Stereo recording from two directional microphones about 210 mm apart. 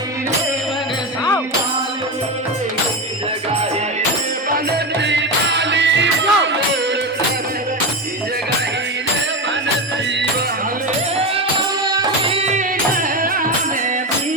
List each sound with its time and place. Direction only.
5.0 s music: 55° right (ahead or behind)
11.9 s music: 20° right (ahead or behind); by 13.5 s 40° right (ahead or behind)